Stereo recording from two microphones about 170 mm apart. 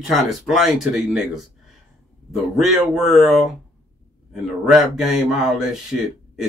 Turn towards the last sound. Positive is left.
turn(degrees=-5)  # may be behind; listen again after turning